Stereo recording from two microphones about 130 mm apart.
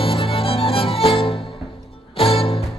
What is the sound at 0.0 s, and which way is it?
Music, 45° left (ahead or behind).